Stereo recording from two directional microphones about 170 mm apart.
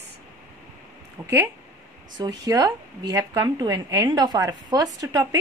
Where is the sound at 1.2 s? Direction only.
15° right (ahead or behind).